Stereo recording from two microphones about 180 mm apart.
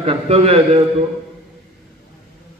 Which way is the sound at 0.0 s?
35° right (ahead or behind).